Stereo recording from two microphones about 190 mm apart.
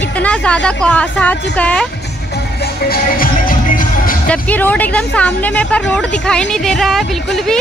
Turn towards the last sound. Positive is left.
turn(degrees=0)  # may be behind; listen again after turning